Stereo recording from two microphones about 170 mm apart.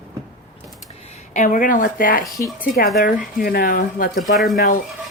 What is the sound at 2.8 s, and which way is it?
Speech, 55° left (ahead or behind).